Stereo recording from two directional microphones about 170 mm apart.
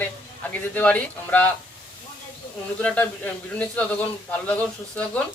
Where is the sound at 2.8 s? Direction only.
10° left (ahead or behind).